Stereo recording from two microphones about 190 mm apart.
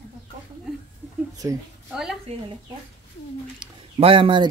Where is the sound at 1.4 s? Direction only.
15° right (ahead or behind).